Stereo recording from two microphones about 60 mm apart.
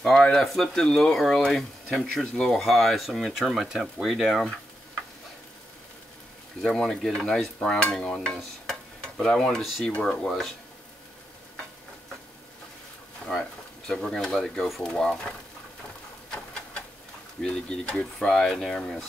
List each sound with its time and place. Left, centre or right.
0.2 s speech: centre
3.3 s speech: centre
6.6 s speech: centre
9.0 s stir: centre
9.8 s speech: centre
13.3 s speech: centre
17.4 s speech: centre